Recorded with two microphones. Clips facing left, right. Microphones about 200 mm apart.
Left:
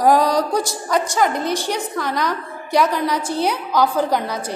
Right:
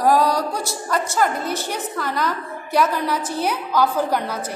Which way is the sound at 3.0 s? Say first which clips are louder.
Left 2 dB; 10° left (ahead or behind).